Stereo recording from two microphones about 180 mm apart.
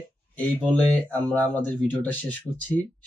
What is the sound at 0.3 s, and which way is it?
Speech, 5° left (ahead or behind).